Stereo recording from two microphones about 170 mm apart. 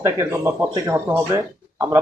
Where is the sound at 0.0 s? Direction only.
15° right (ahead or behind).